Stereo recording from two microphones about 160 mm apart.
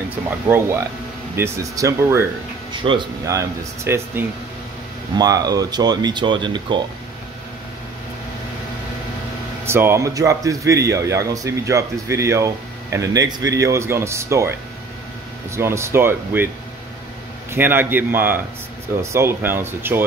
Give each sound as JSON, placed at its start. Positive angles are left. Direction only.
{"t": 1.3, "sound": "speech", "side_deg": -15}
{"t": 2.7, "sound": "speech", "side_deg": -30}
{"t": 3.3, "sound": "speech", "side_deg": -20}
{"t": 9.7, "sound": "speech", "side_deg": -15}
{"t": 15.5, "sound": "speech", "side_deg": -15}
{"t": 17.5, "sound": "speech", "side_deg": -15}